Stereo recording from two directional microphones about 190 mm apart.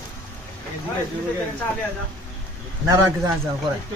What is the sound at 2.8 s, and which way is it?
Speech, 15° right (ahead or behind).